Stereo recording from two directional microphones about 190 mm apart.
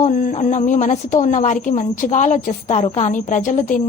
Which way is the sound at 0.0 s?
45° left (ahead or behind).